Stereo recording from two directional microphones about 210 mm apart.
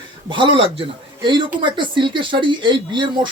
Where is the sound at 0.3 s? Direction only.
25° right (ahead or behind).